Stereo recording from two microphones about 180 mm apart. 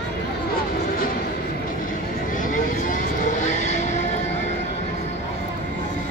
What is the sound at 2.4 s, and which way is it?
Vehicle, 45° left (ahead or behind).